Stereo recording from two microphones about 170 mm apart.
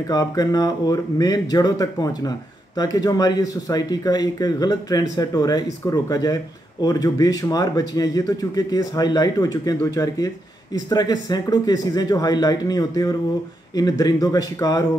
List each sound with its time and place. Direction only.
0.1 s speech: 20° left (ahead or behind)